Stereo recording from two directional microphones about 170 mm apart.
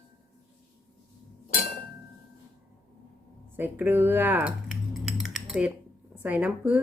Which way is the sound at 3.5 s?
10° right (ahead or behind).